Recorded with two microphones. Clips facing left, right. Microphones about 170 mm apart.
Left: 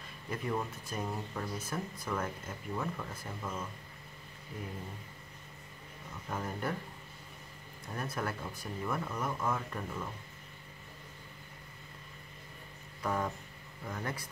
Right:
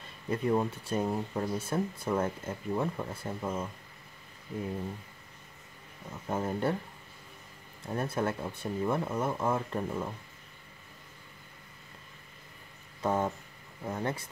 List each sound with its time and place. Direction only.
0.3 s speech: 30° right (ahead or behind)
6.2 s speech: 30° right (ahead or behind)
7.9 s speech: 30° right (ahead or behind)
13.0 s speech: 25° right (ahead or behind)